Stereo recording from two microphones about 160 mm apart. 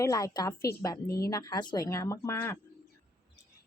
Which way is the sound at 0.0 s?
20° left (ahead or behind).